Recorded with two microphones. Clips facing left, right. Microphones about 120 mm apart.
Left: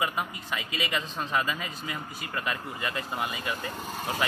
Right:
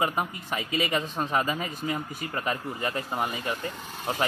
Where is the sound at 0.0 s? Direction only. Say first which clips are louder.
Right 3 dB; 40° right (ahead or behind).